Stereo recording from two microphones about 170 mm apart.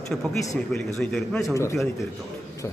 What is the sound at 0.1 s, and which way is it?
A man's voice, centre (ahead or behind).